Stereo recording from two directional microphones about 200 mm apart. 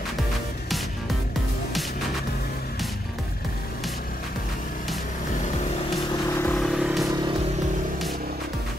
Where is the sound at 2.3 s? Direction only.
50° left (ahead or behind).